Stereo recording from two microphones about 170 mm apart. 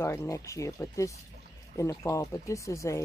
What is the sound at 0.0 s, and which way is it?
Speech, 15° left (ahead or behind).